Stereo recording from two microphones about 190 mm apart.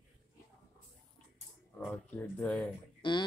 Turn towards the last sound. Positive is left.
turn(degrees=25)  # may be behind; listen again after turning